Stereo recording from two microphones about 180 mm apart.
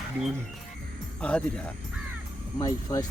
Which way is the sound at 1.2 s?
5° left (ahead or behind).